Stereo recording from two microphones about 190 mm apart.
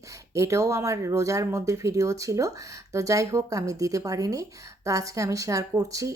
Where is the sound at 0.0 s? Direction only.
15° right (ahead or behind).